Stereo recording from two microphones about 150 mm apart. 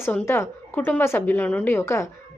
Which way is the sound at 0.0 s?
15° left (ahead or behind).